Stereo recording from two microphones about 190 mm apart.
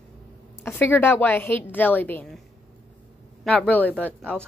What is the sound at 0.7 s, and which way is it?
A woman's voice, 10° left (ahead or behind).